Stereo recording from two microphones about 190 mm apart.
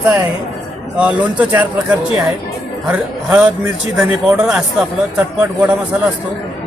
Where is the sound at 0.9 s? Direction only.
5° right (ahead or behind).